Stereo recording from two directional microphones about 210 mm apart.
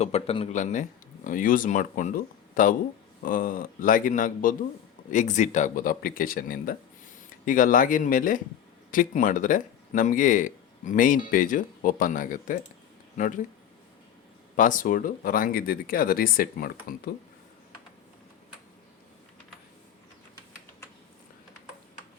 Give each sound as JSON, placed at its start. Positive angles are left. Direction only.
{"t": 0.0, "sound": "speech", "side_deg": 30}
{"t": 14.5, "sound": "speech", "side_deg": 40}